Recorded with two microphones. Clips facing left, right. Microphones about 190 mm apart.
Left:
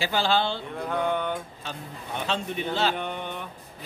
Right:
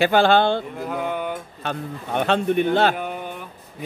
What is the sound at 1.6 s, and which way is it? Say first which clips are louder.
A man's voice: right 9 dB; 60° right (ahead or behind).